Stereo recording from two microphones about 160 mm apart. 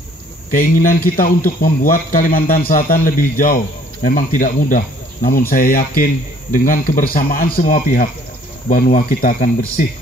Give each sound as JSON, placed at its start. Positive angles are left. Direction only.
{"t": 0.5, "sound": "a man's voice", "side_deg": 60}